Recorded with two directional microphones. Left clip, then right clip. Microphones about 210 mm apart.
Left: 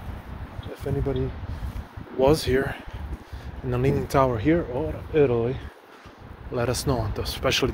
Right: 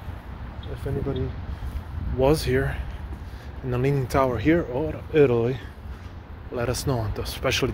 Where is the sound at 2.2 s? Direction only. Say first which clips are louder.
Left 1 dB; centre (ahead or behind).